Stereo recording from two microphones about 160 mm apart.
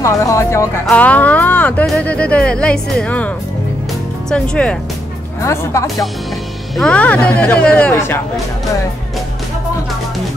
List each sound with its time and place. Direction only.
0.0 s speech: 20° left (ahead or behind)
4.3 s speech: 5° left (ahead or behind)
5.4 s speech: 20° left (ahead or behind)
6.8 s speech: 5° left (ahead or behind)